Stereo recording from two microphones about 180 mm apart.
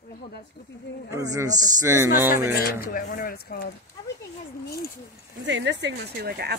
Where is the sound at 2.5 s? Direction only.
55° left (ahead or behind).